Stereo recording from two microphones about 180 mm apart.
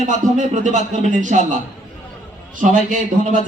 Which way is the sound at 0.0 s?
40° right (ahead or behind).